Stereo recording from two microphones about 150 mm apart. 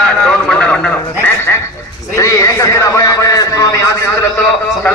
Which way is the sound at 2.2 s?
20° left (ahead or behind).